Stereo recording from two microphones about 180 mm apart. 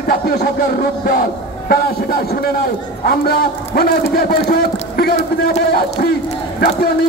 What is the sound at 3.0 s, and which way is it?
A man's voice, 55° left (ahead or behind).